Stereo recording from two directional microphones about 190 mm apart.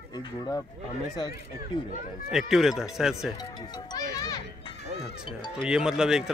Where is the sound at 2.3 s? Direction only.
Centre (ahead or behind).